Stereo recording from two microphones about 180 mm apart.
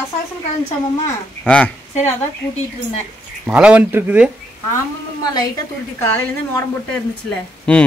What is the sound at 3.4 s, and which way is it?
Speech, 5° right (ahead or behind).